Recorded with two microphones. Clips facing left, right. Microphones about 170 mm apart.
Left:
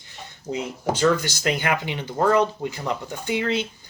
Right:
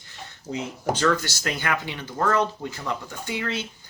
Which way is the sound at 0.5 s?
35° left (ahead or behind).